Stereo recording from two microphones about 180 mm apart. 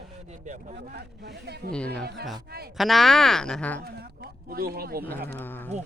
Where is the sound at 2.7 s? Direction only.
Centre (ahead or behind).